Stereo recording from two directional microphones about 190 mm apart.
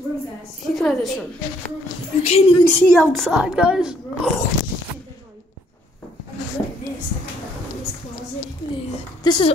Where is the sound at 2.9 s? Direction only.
Centre (ahead or behind).